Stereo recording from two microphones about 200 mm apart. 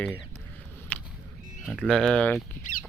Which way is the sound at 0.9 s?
5° left (ahead or behind).